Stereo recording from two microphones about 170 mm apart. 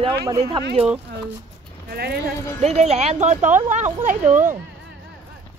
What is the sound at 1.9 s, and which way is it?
Speech, 65° right (ahead or behind).